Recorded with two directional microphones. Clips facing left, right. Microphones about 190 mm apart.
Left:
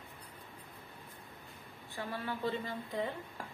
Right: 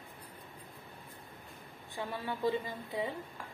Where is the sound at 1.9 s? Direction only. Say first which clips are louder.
Right 1 dB; 15° right (ahead or behind).